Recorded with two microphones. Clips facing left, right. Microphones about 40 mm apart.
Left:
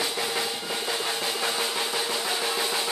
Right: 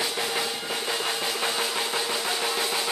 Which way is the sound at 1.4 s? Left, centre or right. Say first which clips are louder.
Even; centre.